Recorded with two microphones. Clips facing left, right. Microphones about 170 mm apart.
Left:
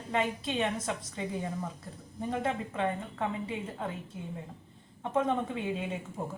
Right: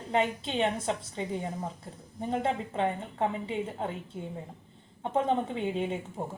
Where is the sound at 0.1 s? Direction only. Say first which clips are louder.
Right 2 dB; 25° right (ahead or behind).